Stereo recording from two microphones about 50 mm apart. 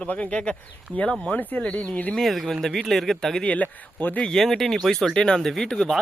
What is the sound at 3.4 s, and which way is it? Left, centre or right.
Speech, left.